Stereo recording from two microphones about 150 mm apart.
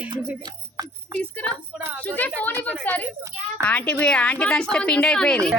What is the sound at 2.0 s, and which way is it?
Speech, 10° left (ahead or behind).